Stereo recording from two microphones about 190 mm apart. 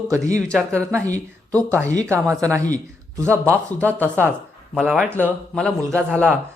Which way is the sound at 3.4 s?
5° left (ahead or behind).